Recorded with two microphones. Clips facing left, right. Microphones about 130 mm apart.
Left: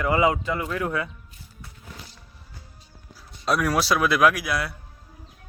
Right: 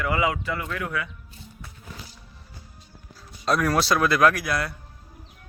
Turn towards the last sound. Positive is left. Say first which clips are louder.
# even
turn(degrees=5)  # may be behind; listen again after turning